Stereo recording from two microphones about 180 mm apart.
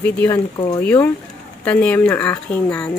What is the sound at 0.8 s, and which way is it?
Speech, 15° left (ahead or behind).